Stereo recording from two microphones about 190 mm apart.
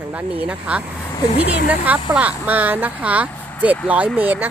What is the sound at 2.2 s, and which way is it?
Speech, 10° right (ahead or behind).